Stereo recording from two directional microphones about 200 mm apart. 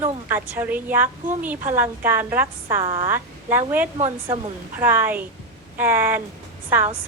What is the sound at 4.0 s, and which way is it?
Speech, 30° right (ahead or behind).